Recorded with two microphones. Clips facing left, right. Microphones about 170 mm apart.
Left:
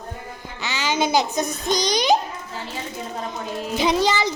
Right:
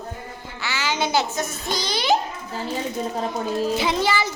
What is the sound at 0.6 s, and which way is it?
A child's voice, 15° left (ahead or behind).